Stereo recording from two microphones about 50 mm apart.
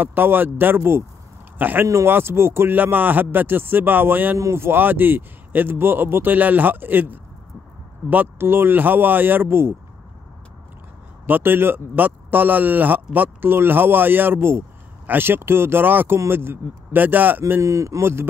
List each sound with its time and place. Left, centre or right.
0.0 s speech: right
1.6 s speech: right
2.0 s speech: right
2.7 s speech: right
8.5 s speech: right
11.2 s speech: right
17.6 s speech: right